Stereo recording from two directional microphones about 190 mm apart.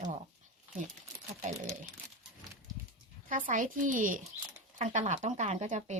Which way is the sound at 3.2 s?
45° right (ahead or behind).